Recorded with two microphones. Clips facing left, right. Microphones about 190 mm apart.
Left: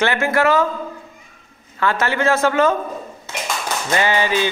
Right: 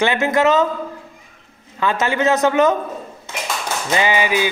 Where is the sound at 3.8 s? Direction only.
15° right (ahead or behind).